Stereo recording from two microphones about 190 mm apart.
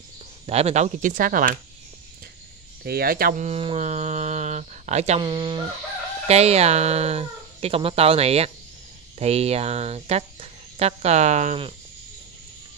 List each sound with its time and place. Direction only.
0.5 s speech: 35° right (ahead or behind)
2.8 s speech: 55° right (ahead or behind)
3.4 s speech: 30° right (ahead or behind)
5.2 s fowl: 25° right (ahead or behind)
6.2 s speech: 35° right (ahead or behind)